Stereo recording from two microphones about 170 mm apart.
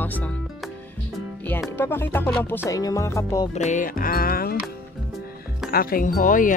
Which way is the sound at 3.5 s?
45° left (ahead or behind).